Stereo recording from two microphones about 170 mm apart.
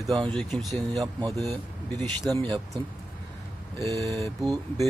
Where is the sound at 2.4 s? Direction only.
30° right (ahead or behind).